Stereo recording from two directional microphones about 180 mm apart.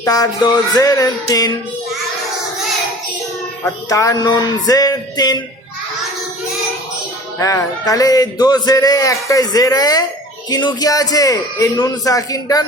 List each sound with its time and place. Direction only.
0.0 s speech: 20° left (ahead or behind)
3.8 s speech: 20° left (ahead or behind)
7.3 s speech: 15° left (ahead or behind)